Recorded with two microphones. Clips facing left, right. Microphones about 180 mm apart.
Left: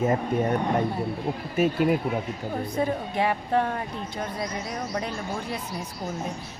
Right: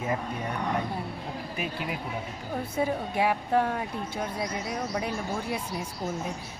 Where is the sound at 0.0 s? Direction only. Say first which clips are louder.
Left 8 dB; 45° left (ahead or behind).